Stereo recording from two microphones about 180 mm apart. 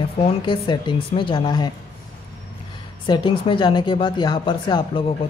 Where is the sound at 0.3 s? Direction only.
25° left (ahead or behind).